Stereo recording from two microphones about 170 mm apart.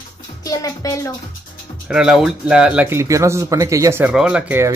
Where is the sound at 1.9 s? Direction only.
5° right (ahead or behind).